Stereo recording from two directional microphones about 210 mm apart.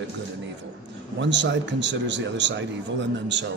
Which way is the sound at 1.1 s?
60° right (ahead or behind).